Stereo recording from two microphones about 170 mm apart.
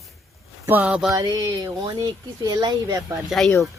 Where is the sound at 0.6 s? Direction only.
10° right (ahead or behind).